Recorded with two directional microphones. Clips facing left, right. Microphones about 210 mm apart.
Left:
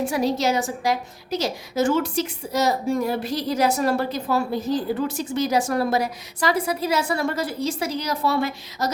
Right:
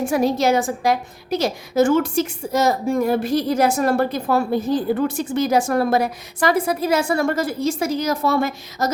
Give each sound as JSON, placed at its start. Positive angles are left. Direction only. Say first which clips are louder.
{"t": 0.0, "sound": "a woman's voice", "louder": "right 4 dB", "side_deg": -50}